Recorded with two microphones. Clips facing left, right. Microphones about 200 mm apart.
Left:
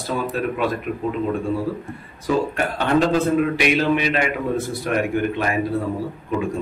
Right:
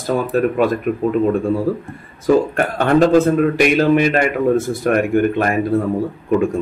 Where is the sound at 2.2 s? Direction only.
50° right (ahead or behind).